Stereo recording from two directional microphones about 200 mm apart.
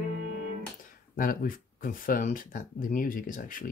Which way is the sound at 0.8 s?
45° left (ahead or behind).